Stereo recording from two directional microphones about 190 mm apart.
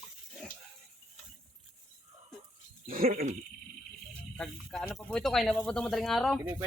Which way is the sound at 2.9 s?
50° right (ahead or behind).